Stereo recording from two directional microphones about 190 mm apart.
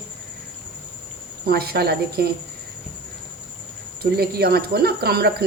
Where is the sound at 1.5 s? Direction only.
55° right (ahead or behind).